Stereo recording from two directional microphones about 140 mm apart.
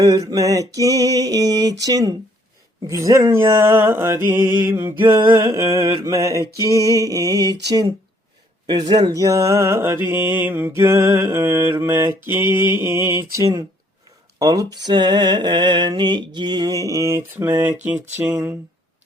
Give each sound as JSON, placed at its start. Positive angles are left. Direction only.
{"t": 0.0, "sound": "mantra", "side_deg": -25}